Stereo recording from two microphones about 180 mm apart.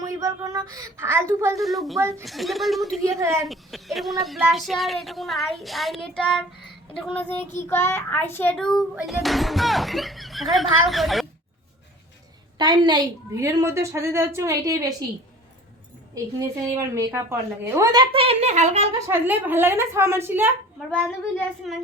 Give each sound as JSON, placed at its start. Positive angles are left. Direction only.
{"t": 0.0, "sound": "a woman's voice", "side_deg": -20}
{"t": 1.5, "sound": "speech", "side_deg": 0}
{"t": 2.0, "sound": "a woman's voice", "side_deg": -15}
{"t": 2.2, "sound": "speech", "side_deg": 0}
{"t": 3.0, "sound": "a woman's voice", "side_deg": -15}
{"t": 3.4, "sound": "speech", "side_deg": 0}
{"t": 12.5, "sound": "a woman's voice", "side_deg": -25}
{"t": 16.1, "sound": "a woman's voice", "side_deg": -15}
{"t": 18.9, "sound": "a woman's voice", "side_deg": -15}